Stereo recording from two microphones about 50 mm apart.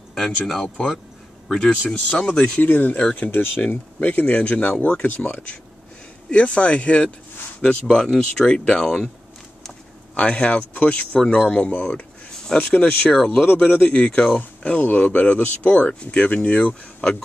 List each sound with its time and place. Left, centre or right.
0.1 s speech: centre; by 2.6 s left
2.6 s speech: left
3.3 s speech: left
3.6 s speech: left
4.4 s speech: left
7.6 s speech: centre
10.1 s speech: left
11.2 s speech: left